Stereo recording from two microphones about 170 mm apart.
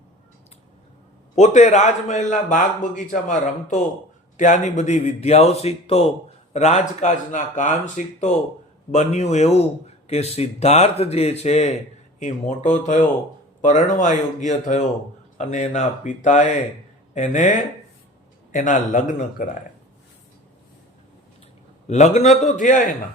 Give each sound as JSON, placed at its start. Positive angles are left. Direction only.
{"t": 1.4, "sound": "speech", "side_deg": 45}
{"t": 18.5, "sound": "speech", "side_deg": 50}
{"t": 21.8, "sound": "speech", "side_deg": 40}